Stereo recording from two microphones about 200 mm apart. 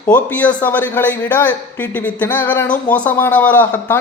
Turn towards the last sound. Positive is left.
turn(degrees=10)  # may be behind; listen again after turning